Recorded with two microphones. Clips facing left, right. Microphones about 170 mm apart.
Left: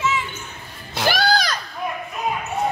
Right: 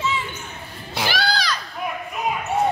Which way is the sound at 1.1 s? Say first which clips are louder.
Left 5 dB; 45° left (ahead or behind).